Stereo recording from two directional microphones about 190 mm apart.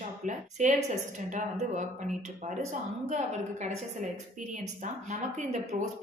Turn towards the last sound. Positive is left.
turn(degrees=-35)  # may be behind; listen again after turning